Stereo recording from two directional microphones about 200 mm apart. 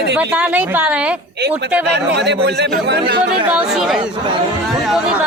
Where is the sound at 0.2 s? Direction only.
5° right (ahead or behind).